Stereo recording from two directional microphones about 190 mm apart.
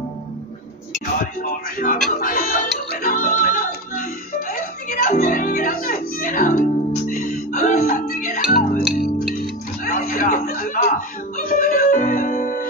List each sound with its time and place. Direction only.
1.2 s music: 45° left (ahead or behind)
9.8 s a sound: 45° left (ahead or behind)
11.3 s music: 45° left (ahead or behind)